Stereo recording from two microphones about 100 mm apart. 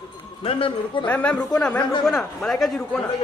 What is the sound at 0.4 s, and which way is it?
Speech, 65° left (ahead or behind).